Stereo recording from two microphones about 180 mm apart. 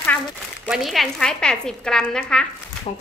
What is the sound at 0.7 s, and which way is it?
A woman's voice, centre (ahead or behind).